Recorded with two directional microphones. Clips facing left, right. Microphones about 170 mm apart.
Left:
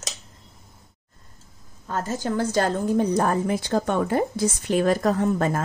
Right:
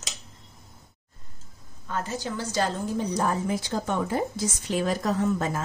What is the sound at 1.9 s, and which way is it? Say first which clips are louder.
A woman's voice: left 4 dB; 45° left (ahead or behind).